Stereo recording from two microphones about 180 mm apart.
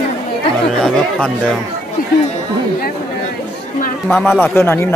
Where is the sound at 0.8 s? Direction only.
5° left (ahead or behind).